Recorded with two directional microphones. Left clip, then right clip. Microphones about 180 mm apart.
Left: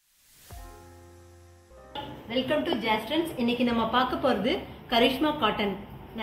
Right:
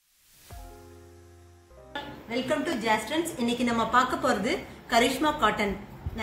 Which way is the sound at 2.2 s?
5° left (ahead or behind).